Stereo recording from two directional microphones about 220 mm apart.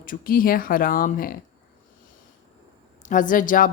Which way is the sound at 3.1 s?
35° left (ahead or behind).